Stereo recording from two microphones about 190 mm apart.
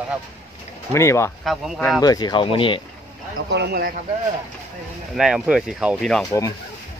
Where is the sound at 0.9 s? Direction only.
15° left (ahead or behind).